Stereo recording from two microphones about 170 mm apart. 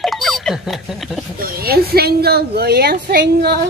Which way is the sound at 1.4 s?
65° right (ahead or behind).